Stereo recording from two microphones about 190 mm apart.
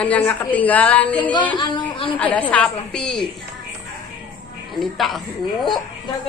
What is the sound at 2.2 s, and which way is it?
A woman's voice, 10° left (ahead or behind).